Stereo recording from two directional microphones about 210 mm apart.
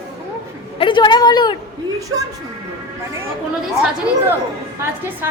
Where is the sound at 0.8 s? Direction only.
20° left (ahead or behind).